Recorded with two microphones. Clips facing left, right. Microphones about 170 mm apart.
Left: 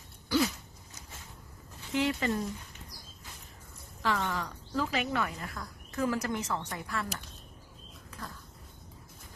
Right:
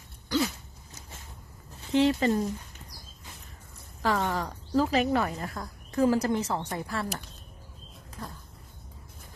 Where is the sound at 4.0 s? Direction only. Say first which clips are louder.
Right 4 dB; 40° right (ahead or behind).